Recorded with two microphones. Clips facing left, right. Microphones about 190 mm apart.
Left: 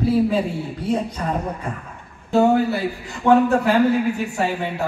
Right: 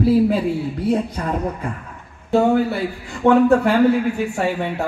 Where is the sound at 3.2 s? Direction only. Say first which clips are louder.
Right 1 dB; 60° right (ahead or behind).